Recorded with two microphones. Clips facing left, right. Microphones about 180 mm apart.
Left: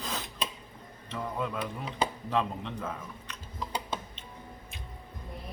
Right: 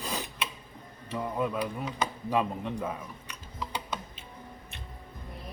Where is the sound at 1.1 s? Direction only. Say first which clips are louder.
Right 3 dB; 10° right (ahead or behind).